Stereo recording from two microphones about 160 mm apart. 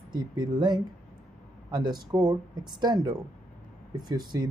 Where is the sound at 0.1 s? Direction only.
25° right (ahead or behind).